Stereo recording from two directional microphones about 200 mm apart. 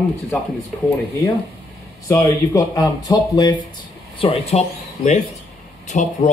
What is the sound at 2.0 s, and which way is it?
Speech, 15° left (ahead or behind).